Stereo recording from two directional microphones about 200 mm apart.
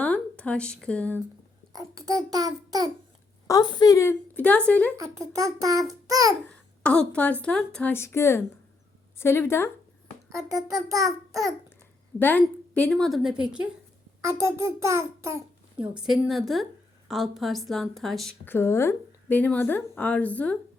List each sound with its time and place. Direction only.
0.0 s speech: 5° left (ahead or behind)
1.7 s a child's voice: 15° right (ahead or behind)
3.4 s a woman's voice: 20° left (ahead or behind)
4.9 s a child's voice: 15° right (ahead or behind)
5.9 s child singing: 15° right (ahead or behind)
6.5 s a woman's voice: 5° left (ahead or behind)
10.3 s a child's voice: 15° right (ahead or behind)
12.2 s a woman's voice: 10° left (ahead or behind); by 15.4 s 15° right (ahead or behind)
15.8 s a woman's voice: 5° right (ahead or behind)